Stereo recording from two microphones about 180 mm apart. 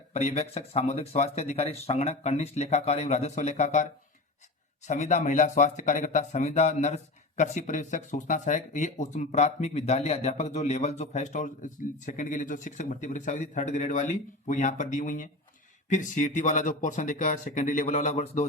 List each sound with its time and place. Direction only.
0.1 s speech: 35° left (ahead or behind)
4.9 s speech: 40° left (ahead or behind)